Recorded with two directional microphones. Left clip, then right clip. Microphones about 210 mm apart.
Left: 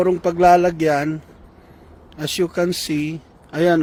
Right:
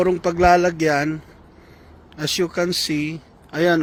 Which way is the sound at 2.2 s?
15° left (ahead or behind).